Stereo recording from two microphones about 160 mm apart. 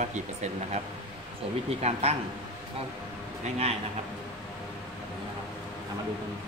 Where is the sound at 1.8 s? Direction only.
40° right (ahead or behind).